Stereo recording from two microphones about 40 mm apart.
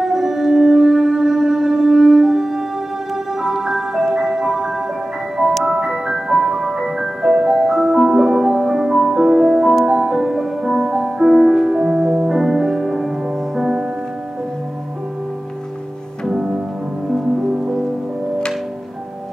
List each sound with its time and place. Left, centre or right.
0.0 s music: centre
3.3 s marimba: centre
5.5 s music: centre
13.6 s music: centre
16.3 s music: centre